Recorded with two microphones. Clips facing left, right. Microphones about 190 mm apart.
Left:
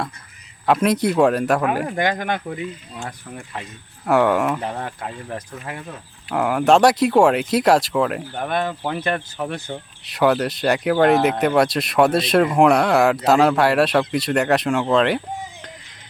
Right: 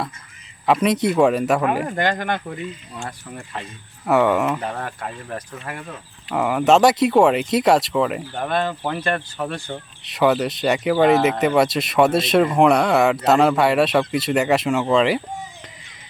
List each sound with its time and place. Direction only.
0.6 s speech: centre (ahead or behind)
2.0 s speech: 15° left (ahead or behind)
4.0 s speech: centre (ahead or behind)
4.6 s speech: 15° left (ahead or behind)
6.2 s speech: centre (ahead or behind)
8.4 s speech: 15° left (ahead or behind)
9.6 s speech: centre (ahead or behind)